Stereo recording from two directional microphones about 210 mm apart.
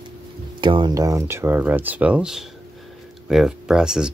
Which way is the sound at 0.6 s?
20° right (ahead or behind).